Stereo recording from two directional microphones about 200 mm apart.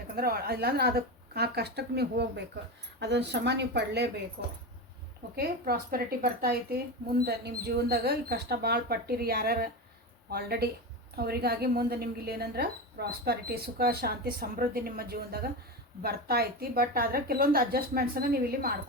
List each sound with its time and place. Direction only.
0.2 s speech: 50° right (ahead or behind)